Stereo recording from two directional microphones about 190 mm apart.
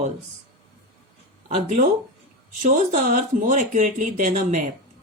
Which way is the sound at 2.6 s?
45° right (ahead or behind).